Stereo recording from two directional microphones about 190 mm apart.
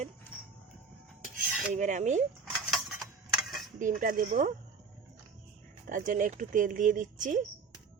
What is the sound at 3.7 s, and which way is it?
Speech, 40° right (ahead or behind).